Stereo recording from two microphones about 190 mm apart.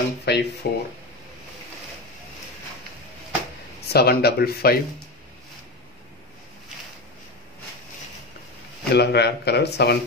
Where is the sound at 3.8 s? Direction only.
55° left (ahead or behind).